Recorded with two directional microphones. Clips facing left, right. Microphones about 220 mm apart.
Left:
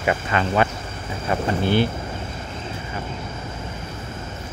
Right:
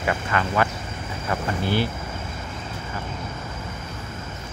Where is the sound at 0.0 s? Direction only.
20° left (ahead or behind).